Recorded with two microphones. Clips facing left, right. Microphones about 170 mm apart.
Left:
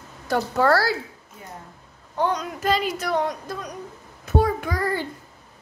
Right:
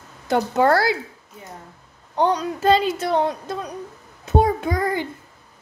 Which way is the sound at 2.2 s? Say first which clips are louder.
Right 4 dB; 30° right (ahead or behind).